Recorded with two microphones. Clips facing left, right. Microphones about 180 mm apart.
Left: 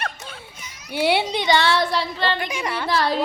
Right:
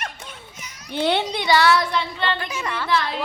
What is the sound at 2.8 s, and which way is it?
Speech, 40° left (ahead or behind).